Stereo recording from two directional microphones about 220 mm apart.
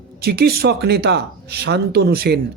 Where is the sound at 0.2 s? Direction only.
45° right (ahead or behind).